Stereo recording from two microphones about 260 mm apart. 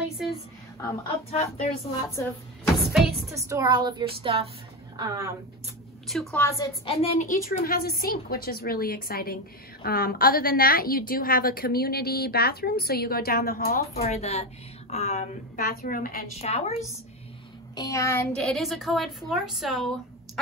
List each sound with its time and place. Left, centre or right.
1.3 s speech: left
2.0 s speech: centre
2.8 s a woman's voice: centre
6.0 s a woman's voice: centre
6.9 s a woman's voice: left
17.7 s a woman's voice: centre